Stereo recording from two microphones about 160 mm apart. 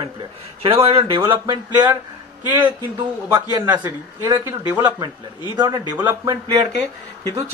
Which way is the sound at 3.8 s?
25° right (ahead or behind).